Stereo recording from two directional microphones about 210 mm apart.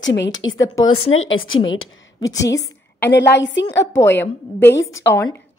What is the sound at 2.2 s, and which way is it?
Speech, 15° left (ahead or behind).